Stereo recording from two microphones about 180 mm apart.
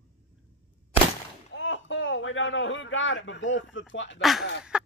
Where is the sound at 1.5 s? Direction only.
90° left.